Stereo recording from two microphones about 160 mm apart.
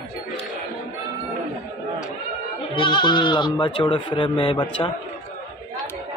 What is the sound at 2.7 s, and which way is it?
Speech, 30° left (ahead or behind).